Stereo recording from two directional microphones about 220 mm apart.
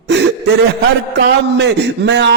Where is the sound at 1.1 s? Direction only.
50° right (ahead or behind).